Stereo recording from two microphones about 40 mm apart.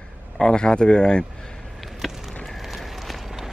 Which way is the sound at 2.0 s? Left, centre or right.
Centre.